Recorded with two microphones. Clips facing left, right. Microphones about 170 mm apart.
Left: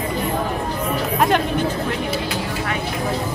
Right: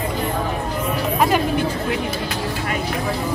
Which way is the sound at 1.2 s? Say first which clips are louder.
Even; 5° right (ahead or behind).